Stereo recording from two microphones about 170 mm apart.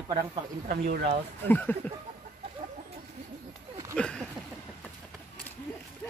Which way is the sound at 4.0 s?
5° left (ahead or behind).